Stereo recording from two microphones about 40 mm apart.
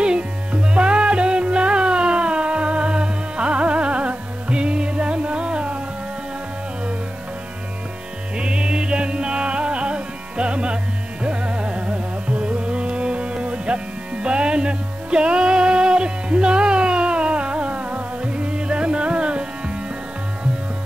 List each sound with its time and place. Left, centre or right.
0.0 s music: right
8.4 s music: right
11.2 s carnatic music: right
14.2 s music: right